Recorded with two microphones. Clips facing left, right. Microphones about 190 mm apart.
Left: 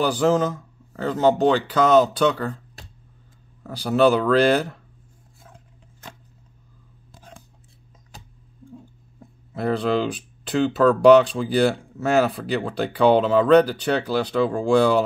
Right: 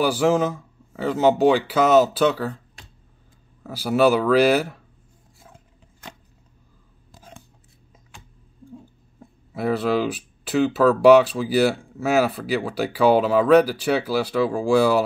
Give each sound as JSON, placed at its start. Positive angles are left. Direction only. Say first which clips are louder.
{"t": 0.0, "sound": "speech", "louder": "even", "side_deg": -10}
{"t": 3.6, "sound": "speech", "louder": "even", "side_deg": -5}
{"t": 7.2, "sound": "scissors", "louder": "right 1 dB", "side_deg": -5}
{"t": 8.1, "sound": "tick-tock", "louder": "left 2 dB", "side_deg": 40}
{"t": 9.5, "sound": "speech", "louder": "even", "side_deg": -5}